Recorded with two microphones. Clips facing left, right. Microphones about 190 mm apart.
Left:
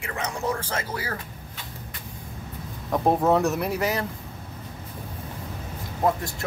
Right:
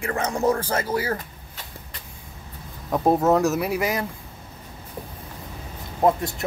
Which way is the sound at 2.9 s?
5° right (ahead or behind).